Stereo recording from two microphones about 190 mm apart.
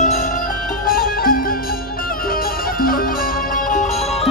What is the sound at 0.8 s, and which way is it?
Music, 50° left (ahead or behind).